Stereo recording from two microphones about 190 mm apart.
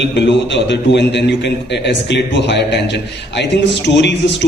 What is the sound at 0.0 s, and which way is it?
A man's voice, 65° left (ahead or behind).